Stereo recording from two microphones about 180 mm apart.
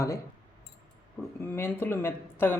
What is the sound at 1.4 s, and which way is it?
Speech, 15° left (ahead or behind).